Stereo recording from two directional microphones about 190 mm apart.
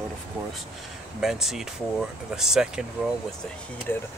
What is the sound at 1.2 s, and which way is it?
Speech, centre (ahead or behind).